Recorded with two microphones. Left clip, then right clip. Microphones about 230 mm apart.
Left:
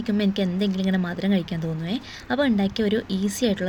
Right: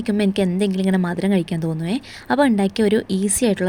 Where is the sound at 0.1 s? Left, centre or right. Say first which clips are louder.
Right 5 dB; right.